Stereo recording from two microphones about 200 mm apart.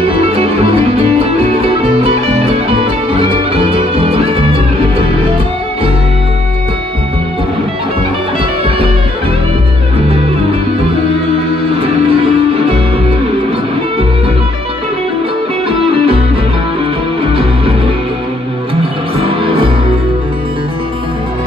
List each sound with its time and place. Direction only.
0.1 s music: 30° right (ahead or behind)
11.8 s music: 30° right (ahead or behind)
17.2 s music: 30° right (ahead or behind)
19.2 s music: 25° right (ahead or behind)